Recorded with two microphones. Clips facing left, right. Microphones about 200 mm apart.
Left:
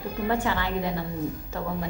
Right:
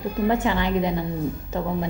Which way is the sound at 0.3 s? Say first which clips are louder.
Right 4 dB; 20° right (ahead or behind).